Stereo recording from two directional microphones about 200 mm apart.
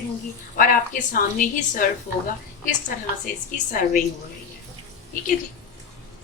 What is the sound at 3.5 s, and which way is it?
Speech, 40° left (ahead or behind).